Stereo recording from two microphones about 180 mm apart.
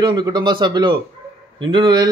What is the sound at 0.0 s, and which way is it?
A man's voice, 25° right (ahead or behind).